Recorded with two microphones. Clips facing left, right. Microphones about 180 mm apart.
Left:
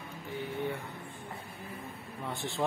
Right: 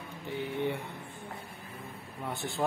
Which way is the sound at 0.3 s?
20° right (ahead or behind).